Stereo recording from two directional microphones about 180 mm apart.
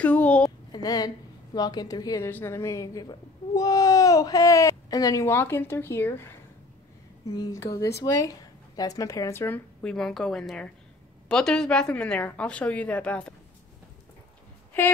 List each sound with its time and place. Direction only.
0.0 s a sound: 5° left (ahead or behind)
0.8 s a woman's voice: 20° left (ahead or behind)
7.3 s a woman's voice: 20° left (ahead or behind)
14.7 s a woman's voice: 10° left (ahead or behind)